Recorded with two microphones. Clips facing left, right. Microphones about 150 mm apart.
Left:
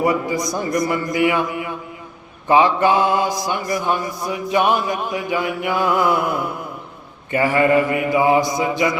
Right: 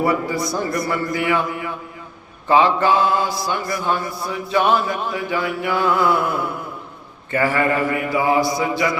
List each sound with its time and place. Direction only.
0.0 s mantra: 15° left (ahead or behind)
2.5 s mantra: 15° left (ahead or behind)